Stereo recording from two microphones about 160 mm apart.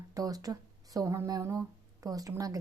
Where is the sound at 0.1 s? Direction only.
20° right (ahead or behind).